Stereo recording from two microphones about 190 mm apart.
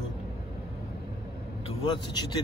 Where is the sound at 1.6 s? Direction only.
30° left (ahead or behind).